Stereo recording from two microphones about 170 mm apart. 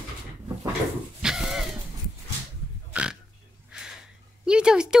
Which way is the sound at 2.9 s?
5° right (ahead or behind).